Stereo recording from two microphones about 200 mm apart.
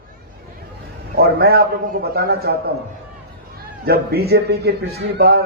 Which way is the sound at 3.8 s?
50° right (ahead or behind).